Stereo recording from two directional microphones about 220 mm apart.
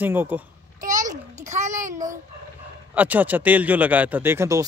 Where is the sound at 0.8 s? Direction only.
35° right (ahead or behind).